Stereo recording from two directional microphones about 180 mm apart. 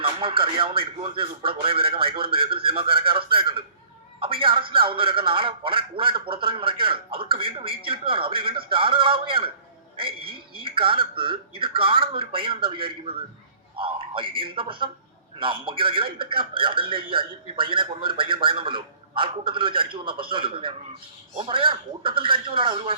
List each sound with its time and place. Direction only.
0.0 s a man's voice: 30° right (ahead or behind)